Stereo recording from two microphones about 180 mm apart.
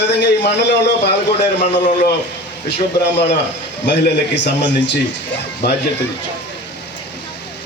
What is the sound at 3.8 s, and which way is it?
A man's voice, 75° left (ahead or behind).